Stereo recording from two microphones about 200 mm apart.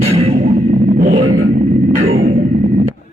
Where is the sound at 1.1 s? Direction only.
25° right (ahead or behind).